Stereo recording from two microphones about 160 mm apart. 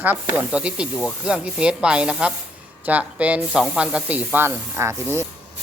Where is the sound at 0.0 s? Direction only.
10° right (ahead or behind).